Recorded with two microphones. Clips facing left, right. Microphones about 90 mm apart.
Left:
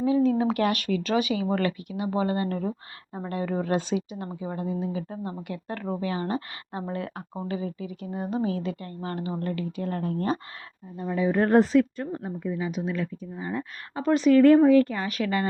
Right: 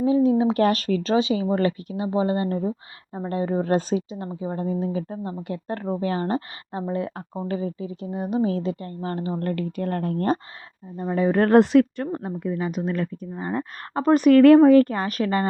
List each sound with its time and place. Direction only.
0.0 s a sound: 25° right (ahead or behind)
0.5 s speech: 35° right (ahead or behind)
3.7 s speech: 40° right (ahead or behind)
6.9 s speech: 25° right (ahead or behind)
7.4 s speech: 40° right (ahead or behind); by 8.4 s 20° right (ahead or behind)
8.4 s speech: 35° right (ahead or behind)
9.4 s a woman's voice: 50° right (ahead or behind)
10.9 s speech: 35° right (ahead or behind)
11.3 s a woman's voice: 75° right (ahead or behind); by 14.3 s 45° right (ahead or behind)
14.3 s a woman's voice: 70° right (ahead or behind); by 15.4 s 40° right (ahead or behind)